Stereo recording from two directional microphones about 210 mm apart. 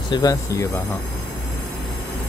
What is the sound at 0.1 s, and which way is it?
Speech, 15° left (ahead or behind).